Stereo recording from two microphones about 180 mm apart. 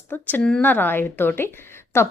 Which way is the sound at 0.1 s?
10° left (ahead or behind).